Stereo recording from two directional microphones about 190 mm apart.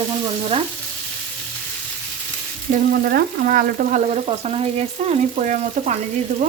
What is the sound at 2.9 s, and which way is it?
Frying, 50° right (ahead or behind).